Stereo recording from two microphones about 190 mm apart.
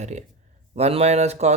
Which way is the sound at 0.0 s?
40° right (ahead or behind).